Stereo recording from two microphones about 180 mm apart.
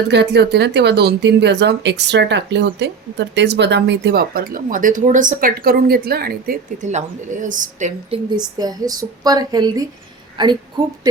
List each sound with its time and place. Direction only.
0.1 s speech: 70° right (ahead or behind)
6.8 s speech: 40° right (ahead or behind)
8.5 s a woman's voice: 20° right (ahead or behind)